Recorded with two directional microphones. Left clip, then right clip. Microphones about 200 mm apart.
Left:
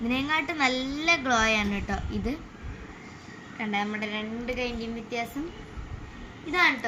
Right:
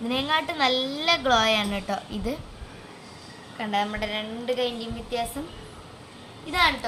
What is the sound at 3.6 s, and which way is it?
A woman's voice, 30° right (ahead or behind).